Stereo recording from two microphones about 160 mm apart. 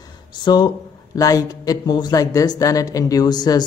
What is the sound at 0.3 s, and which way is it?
Speech, 25° left (ahead or behind).